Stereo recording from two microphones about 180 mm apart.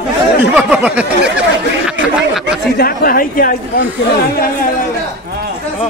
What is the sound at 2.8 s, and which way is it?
Speech, 55° left (ahead or behind).